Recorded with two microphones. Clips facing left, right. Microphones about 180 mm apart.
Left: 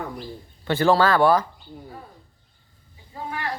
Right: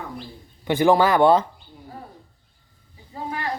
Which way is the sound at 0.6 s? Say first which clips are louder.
Right 2 dB; 15° right (ahead or behind).